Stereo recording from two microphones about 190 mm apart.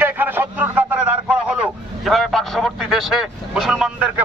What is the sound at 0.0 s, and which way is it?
Vehicle, 10° right (ahead or behind).